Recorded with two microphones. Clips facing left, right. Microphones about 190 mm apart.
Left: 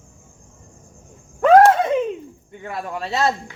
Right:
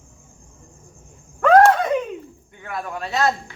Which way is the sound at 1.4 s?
20° left (ahead or behind).